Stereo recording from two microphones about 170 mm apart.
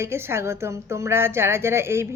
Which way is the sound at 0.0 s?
15° right (ahead or behind).